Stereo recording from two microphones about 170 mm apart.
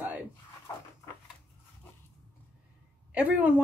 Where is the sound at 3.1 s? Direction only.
10° right (ahead or behind).